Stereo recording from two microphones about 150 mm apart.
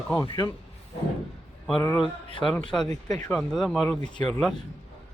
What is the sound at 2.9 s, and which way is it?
Speech, 50° right (ahead or behind).